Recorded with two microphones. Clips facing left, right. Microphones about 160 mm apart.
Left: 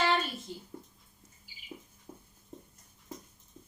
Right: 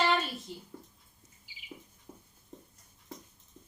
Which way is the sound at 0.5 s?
Centre (ahead or behind).